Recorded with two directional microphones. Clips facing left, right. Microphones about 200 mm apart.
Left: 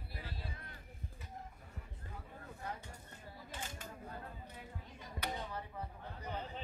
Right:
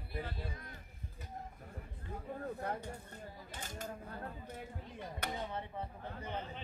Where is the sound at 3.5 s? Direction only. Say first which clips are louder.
Right 3 dB; 40° right (ahead or behind).